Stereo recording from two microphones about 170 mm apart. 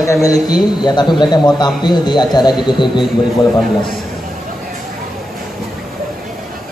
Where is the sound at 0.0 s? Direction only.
20° left (ahead or behind).